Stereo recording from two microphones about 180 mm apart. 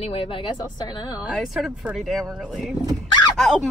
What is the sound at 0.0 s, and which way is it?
A woman's voice, 30° left (ahead or behind).